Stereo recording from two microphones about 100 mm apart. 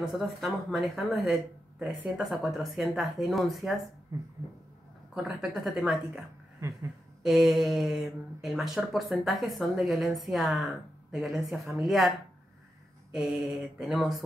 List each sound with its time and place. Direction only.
0.0 s speech: centre (ahead or behind)
4.1 s a sound: 30° right (ahead or behind)
5.1 s speech: 5° right (ahead or behind)
7.2 s speech: centre (ahead or behind)
13.1 s speech: 5° right (ahead or behind)